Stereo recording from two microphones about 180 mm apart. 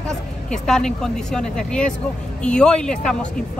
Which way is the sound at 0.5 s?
5° left (ahead or behind).